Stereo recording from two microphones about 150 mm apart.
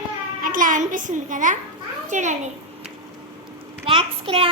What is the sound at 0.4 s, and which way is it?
A woman's voice, 65° right (ahead or behind).